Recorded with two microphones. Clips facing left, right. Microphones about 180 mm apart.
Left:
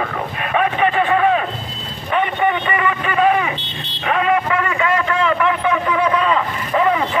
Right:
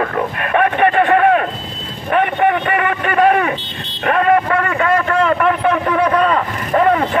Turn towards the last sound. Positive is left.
turn(degrees=-45)  # may be behind; listen again after turning